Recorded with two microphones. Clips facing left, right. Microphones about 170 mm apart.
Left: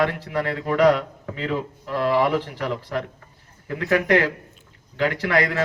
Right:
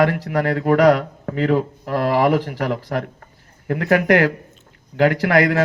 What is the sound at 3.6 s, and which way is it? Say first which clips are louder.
Speech: right 5 dB; 55° right (ahead or behind).